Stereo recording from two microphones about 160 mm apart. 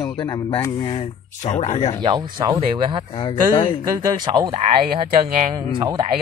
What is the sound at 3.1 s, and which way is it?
Speech, 30° left (ahead or behind).